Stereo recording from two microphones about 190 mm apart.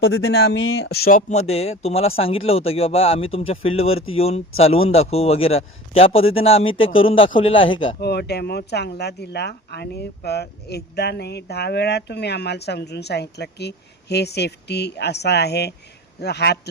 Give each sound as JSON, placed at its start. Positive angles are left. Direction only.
{"t": 0.0, "sound": "speech", "side_deg": 90}
{"t": 0.8, "sound": "speech", "side_deg": 55}
{"t": 1.3, "sound": "speech", "side_deg": 35}
{"t": 8.0, "sound": "speech", "side_deg": 60}